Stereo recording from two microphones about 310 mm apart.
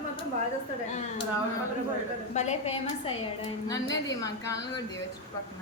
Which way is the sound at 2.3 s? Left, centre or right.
Left.